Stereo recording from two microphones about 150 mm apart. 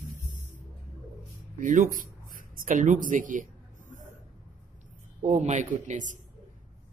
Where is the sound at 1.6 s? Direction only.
60° right (ahead or behind).